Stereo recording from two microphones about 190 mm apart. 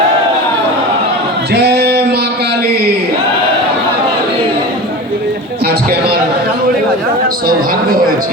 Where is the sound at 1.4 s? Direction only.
60° right (ahead or behind).